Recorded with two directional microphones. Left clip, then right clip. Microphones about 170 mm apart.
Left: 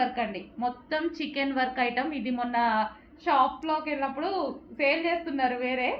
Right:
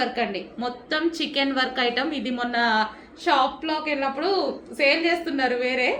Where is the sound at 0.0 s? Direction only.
30° right (ahead or behind).